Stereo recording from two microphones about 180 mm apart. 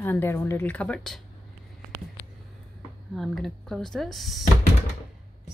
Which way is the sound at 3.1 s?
Centre (ahead or behind).